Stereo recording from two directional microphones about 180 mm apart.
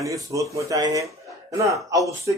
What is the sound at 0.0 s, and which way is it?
Speech, 20° right (ahead or behind).